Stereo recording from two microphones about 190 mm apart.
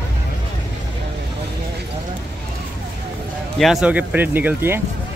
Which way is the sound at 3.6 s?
5° right (ahead or behind).